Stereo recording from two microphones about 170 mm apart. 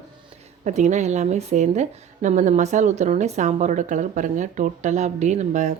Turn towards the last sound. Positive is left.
turn(degrees=-45)  # may be behind; listen again after turning